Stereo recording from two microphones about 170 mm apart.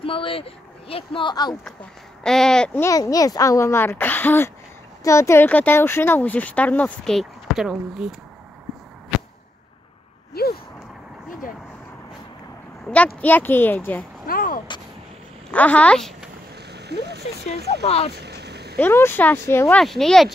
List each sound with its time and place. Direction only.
0.0 s speech: 30° left (ahead or behind)
2.2 s speech: 5° left (ahead or behind)
9.1 s whip: centre (ahead or behind)
10.3 s a sound: 65° left (ahead or behind)
12.8 s speech: 10° left (ahead or behind)
14.2 s a sound: 55° left (ahead or behind)
15.5 s speech: 10° left (ahead or behind)
16.7 s a sound: 75° right (ahead or behind)
17.8 s speech: 35° left (ahead or behind)
18.2 s vehicle: 75° right (ahead or behind)
18.8 s speech: 15° left (ahead or behind)
19.8 s speech: centre (ahead or behind)